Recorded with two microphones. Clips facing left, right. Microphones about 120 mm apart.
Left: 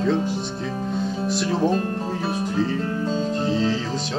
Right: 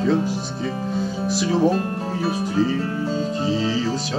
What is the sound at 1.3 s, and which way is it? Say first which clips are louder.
Speech: right 3 dB; 5° right (ahead or behind).